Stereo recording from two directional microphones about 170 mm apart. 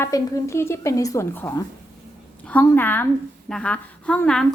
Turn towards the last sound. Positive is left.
turn(degrees=5)  # may be behind; listen again after turning